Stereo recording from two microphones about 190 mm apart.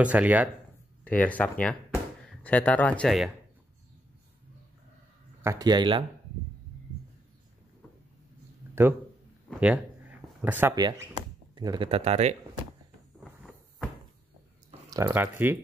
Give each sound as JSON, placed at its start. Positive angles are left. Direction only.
{"t": 0.0, "sound": "speech", "side_deg": -5}
{"t": 1.0, "sound": "speech", "side_deg": 10}
{"t": 5.4, "sound": "speech", "side_deg": -15}
{"t": 8.8, "sound": "speech", "side_deg": -10}
{"t": 10.4, "sound": "speech", "side_deg": -10}
{"t": 10.7, "sound": "speech", "side_deg": -20}
{"t": 11.9, "sound": "speech", "side_deg": -35}
{"t": 13.2, "sound": "a sound", "side_deg": 0}
{"t": 14.9, "sound": "speech", "side_deg": -15}